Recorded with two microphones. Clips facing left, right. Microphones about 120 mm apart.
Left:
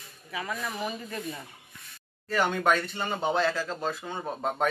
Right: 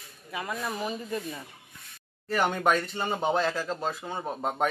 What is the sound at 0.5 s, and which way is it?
Speech, 15° right (ahead or behind).